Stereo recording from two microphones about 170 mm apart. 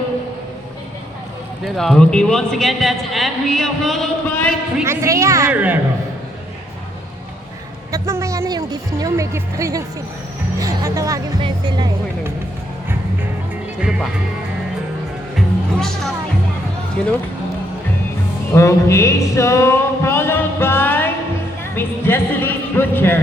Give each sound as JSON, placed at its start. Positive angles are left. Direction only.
{"t": 1.6, "sound": "a man's voice", "side_deg": 0}
{"t": 4.9, "sound": "a woman's voice", "side_deg": -15}
{"t": 7.9, "sound": "speech", "side_deg": -15}
{"t": 15.4, "sound": "music", "side_deg": 5}
{"t": 17.0, "sound": "a man's voice", "side_deg": 5}
{"t": 18.5, "sound": "music", "side_deg": 15}
{"t": 21.8, "sound": "speech", "side_deg": 15}